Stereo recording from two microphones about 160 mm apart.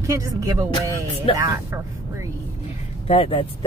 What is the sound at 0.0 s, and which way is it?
Speech, 20° right (ahead or behind).